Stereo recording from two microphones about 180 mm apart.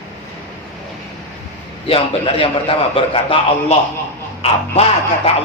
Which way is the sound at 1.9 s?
30° left (ahead or behind).